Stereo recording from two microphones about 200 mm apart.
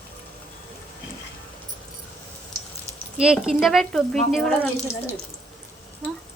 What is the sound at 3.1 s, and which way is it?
Speech, 5° right (ahead or behind).